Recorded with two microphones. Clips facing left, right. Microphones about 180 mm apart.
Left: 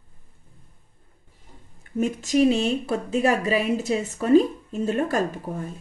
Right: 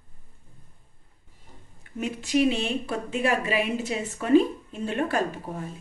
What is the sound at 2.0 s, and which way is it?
Speech, 40° left (ahead or behind).